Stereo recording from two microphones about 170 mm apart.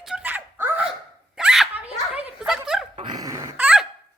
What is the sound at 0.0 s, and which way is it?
Dog, 5° right (ahead or behind).